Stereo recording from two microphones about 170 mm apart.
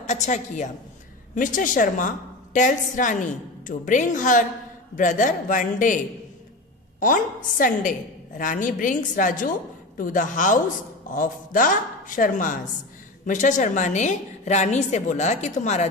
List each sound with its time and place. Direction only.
0.0 s a woman's voice: 45° left (ahead or behind)
7.0 s a woman's voice: 50° left (ahead or behind)